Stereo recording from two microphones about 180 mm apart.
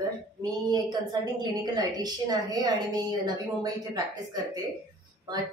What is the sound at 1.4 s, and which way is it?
A woman's voice, 20° right (ahead or behind).